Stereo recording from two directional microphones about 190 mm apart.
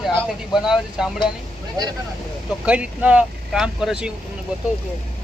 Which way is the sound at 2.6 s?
5° right (ahead or behind).